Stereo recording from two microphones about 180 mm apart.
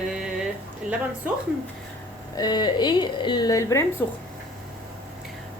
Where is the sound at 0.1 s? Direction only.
5° right (ahead or behind).